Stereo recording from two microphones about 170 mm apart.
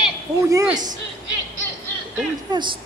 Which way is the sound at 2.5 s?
25° right (ahead or behind).